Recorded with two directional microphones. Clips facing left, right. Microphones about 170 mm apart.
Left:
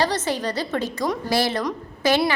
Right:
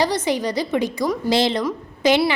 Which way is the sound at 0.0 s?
15° right (ahead or behind).